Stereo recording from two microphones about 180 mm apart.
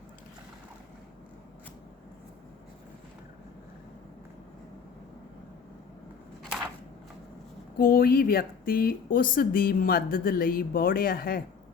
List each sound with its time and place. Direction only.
7.8 s speech: 55° left (ahead or behind)